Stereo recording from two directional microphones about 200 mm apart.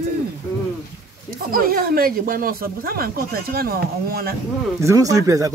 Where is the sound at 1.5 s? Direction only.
45° right (ahead or behind).